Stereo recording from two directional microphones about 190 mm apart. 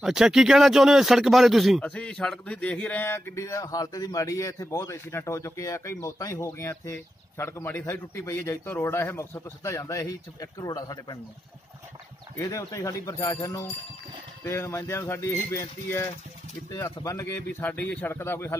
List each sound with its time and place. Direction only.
0.0 s speech: centre (ahead or behind); by 11.1 s 20° left (ahead or behind)
12.4 s speech: 15° left (ahead or behind)